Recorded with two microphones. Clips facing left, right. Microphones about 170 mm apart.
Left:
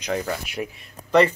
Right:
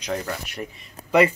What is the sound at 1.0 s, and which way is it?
Speech, 10° right (ahead or behind).